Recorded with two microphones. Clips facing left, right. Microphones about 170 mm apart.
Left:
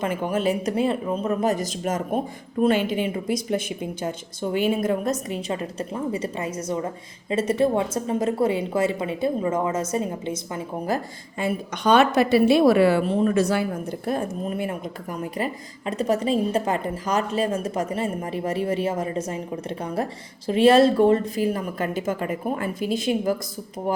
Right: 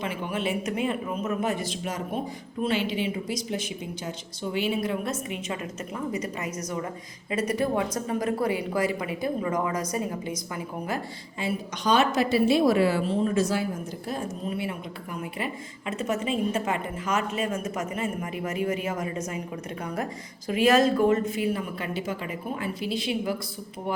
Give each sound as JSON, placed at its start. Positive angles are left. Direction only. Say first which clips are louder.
{"t": 0.0, "sound": "a man's voice", "louder": "left 6 dB", "side_deg": 45}
{"t": 10.8, "sound": "a woman's voice", "louder": "left 5 dB", "side_deg": 40}
{"t": 11.4, "sound": "a woman's voice", "louder": "left 5 dB", "side_deg": 55}
{"t": 14.1, "sound": "a man's voice", "louder": "left 5 dB", "side_deg": 50}